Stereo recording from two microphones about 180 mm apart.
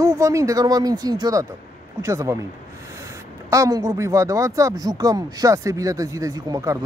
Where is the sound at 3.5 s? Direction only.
20° right (ahead or behind).